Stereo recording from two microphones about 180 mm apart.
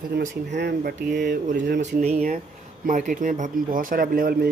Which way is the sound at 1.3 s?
50° right (ahead or behind).